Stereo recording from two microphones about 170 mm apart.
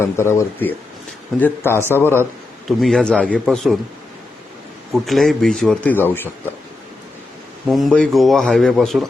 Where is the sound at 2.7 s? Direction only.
Centre (ahead or behind).